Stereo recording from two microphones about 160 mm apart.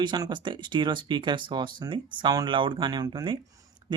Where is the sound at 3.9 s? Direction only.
30° right (ahead or behind).